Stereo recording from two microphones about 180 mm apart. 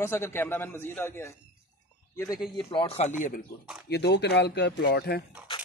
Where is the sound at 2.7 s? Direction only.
30° left (ahead or behind); by 3.4 s 45° left (ahead or behind).